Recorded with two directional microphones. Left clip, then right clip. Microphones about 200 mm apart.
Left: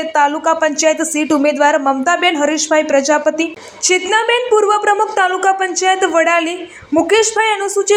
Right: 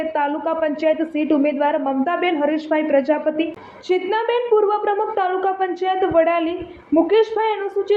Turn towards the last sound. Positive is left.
turn(degrees=20)  # may be behind; listen again after turning